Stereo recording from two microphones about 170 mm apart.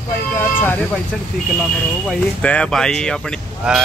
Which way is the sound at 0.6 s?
10° left (ahead or behind).